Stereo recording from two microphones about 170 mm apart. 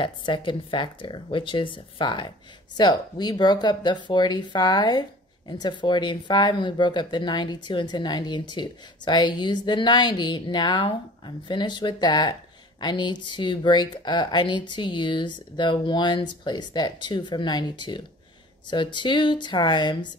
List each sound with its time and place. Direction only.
0.0 s speech: 30° left (ahead or behind)